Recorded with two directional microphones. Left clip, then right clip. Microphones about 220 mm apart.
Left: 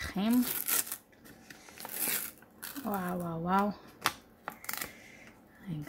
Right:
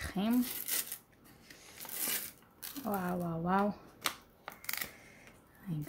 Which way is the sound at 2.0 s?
15° left (ahead or behind).